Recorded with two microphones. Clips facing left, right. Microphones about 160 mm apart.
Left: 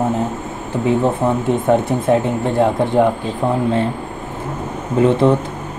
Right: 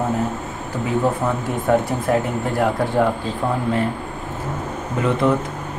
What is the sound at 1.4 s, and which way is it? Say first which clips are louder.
Speech: left 2 dB; 25° left (ahead or behind).